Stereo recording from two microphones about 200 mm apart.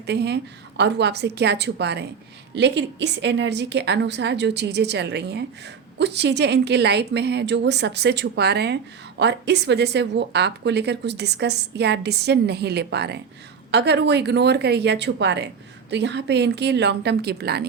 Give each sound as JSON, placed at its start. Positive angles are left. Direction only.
{"t": 0.0, "sound": "a woman's voice", "side_deg": -55}